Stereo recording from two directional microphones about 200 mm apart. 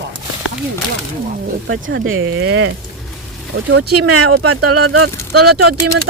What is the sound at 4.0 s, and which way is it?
Speech, 90° right.